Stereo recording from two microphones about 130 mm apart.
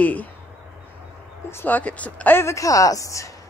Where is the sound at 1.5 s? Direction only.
15° left (ahead or behind).